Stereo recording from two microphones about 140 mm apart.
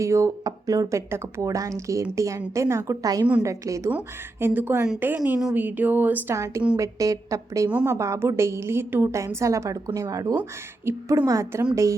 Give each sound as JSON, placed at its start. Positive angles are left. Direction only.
{"t": 0.0, "sound": "a woman's voice", "side_deg": -20}
{"t": 7.7, "sound": "a woman's voice", "side_deg": -10}
{"t": 7.9, "sound": "a woman's voice", "side_deg": -20}